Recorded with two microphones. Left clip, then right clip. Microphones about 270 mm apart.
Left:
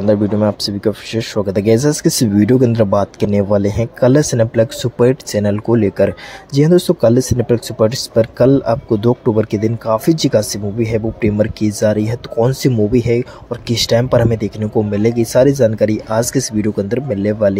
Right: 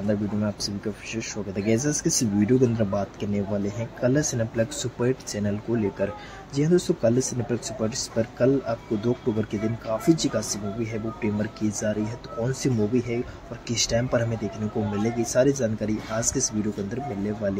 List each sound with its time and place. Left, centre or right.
0.0 s speech: left